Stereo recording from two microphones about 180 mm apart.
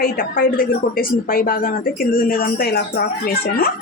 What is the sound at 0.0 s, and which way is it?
A woman's voice, 55° left (ahead or behind).